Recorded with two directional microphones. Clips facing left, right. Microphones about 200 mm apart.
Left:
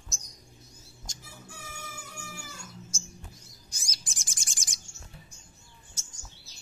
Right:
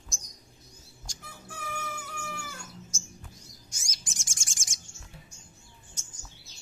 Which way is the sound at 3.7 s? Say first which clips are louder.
Right 1 dB; 35° left (ahead or behind).